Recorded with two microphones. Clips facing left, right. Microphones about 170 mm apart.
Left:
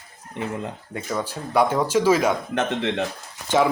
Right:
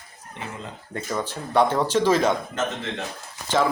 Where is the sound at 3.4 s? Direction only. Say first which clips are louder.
Left 2 dB; 15° left (ahead or behind).